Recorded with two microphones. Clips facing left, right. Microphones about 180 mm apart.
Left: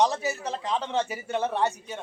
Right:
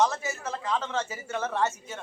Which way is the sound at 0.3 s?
20° left (ahead or behind).